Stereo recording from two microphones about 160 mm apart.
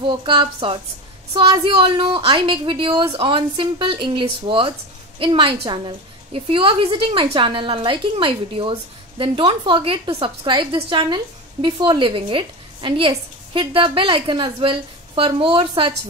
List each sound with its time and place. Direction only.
0.0 s a woman's voice: 30° right (ahead or behind)